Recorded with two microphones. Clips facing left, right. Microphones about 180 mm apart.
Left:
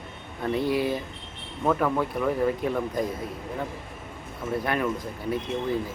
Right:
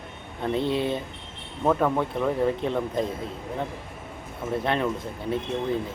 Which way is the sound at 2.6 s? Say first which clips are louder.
Even; 25° right (ahead or behind).